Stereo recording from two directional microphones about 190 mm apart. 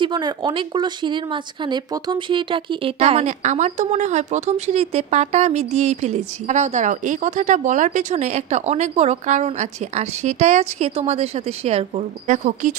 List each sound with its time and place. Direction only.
0.0 s speech: 25° right (ahead or behind); by 12.7 s 40° right (ahead or behind)